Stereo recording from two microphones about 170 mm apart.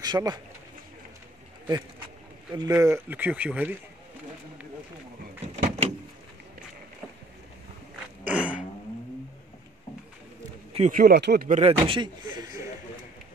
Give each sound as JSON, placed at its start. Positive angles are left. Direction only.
{"t": 0.0, "sound": "speech", "side_deg": -25}
{"t": 2.5, "sound": "speech", "side_deg": -20}
{"t": 5.6, "sound": "door", "side_deg": -40}
{"t": 8.2, "sound": "a sound", "side_deg": -10}
{"t": 10.9, "sound": "speech", "side_deg": -60}
{"t": 11.4, "sound": "speech", "side_deg": -45}
{"t": 11.8, "sound": "speech", "side_deg": -30}